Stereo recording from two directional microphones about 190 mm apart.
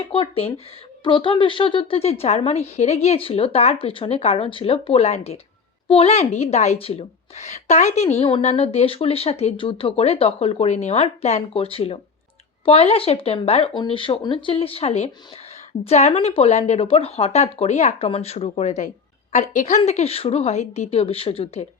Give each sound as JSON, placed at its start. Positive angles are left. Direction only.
{"t": 0.1, "sound": "a woman's voice", "side_deg": 30}